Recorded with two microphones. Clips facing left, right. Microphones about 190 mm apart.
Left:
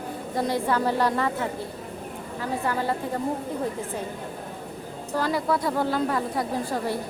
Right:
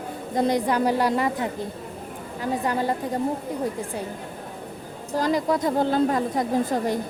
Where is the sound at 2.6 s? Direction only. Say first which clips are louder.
Right 1 dB; 15° right (ahead or behind).